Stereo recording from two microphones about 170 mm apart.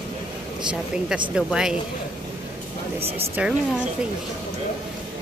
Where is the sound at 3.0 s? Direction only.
35° right (ahead or behind).